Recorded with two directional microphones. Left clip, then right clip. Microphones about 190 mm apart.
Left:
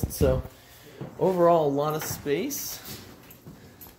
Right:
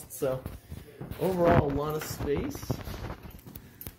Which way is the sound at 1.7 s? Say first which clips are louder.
Left 5 dB; 20° left (ahead or behind).